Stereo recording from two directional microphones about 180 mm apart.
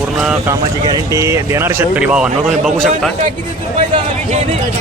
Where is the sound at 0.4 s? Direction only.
20° right (ahead or behind); by 2.9 s centre (ahead or behind).